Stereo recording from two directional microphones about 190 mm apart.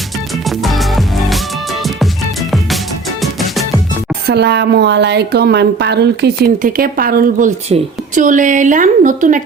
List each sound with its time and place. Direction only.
0.6 s music: centre (ahead or behind)
3.2 s music: centre (ahead or behind)
4.3 s a woman's voice: 60° right (ahead or behind); by 9.4 s 45° right (ahead or behind)